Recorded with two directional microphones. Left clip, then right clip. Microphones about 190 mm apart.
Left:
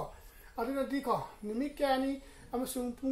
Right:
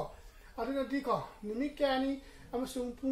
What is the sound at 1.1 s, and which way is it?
Speech, 35° left (ahead or behind).